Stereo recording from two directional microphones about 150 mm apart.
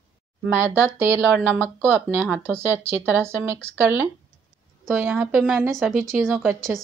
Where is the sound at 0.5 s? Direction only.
15° right (ahead or behind).